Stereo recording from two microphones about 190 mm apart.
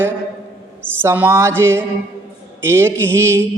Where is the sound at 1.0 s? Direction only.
10° right (ahead or behind).